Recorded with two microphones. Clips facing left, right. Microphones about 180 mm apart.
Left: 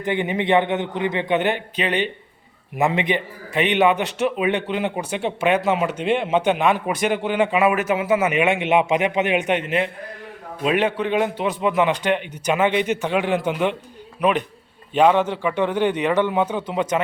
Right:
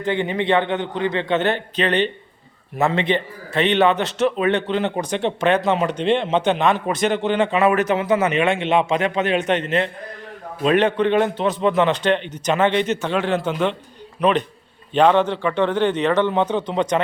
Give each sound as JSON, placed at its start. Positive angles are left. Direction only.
{"t": 0.0, "sound": "a man's voice", "side_deg": 20}